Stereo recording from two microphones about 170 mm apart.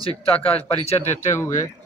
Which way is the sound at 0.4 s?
35° left (ahead or behind).